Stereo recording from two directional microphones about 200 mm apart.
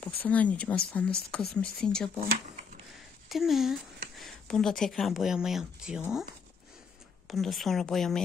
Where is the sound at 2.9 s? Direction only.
Centre (ahead or behind).